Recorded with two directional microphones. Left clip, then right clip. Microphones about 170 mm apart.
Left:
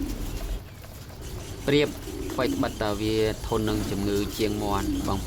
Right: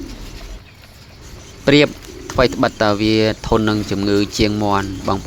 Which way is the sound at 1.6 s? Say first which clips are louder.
Right 10 dB; 45° right (ahead or behind).